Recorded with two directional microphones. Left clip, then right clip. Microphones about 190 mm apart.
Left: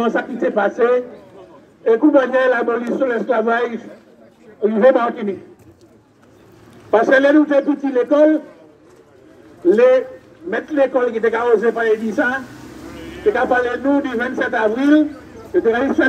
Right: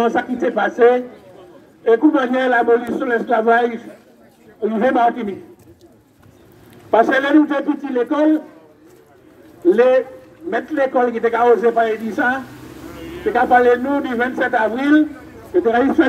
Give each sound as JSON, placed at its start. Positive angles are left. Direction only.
{"t": 0.0, "sound": "a man's voice", "side_deg": 25}
{"t": 6.9, "sound": "a man's voice", "side_deg": 35}
{"t": 9.7, "sound": "a man's voice", "side_deg": 35}